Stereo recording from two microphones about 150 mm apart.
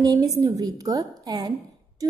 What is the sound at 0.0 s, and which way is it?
A woman's voice, 25° right (ahead or behind).